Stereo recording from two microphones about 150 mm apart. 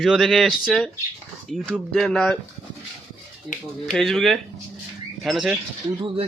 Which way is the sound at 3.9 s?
Centre (ahead or behind).